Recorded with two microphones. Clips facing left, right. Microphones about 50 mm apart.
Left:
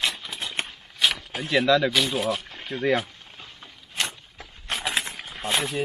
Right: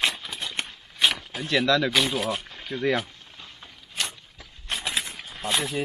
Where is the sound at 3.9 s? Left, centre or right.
Left.